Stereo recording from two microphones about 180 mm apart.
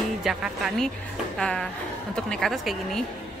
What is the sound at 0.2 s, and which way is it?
A woman's voice, centre (ahead or behind).